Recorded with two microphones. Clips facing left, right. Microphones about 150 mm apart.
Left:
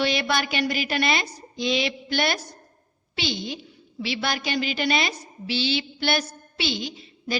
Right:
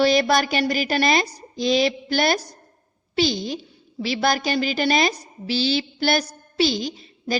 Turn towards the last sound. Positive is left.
turn(degrees=-40)  # may be behind; listen again after turning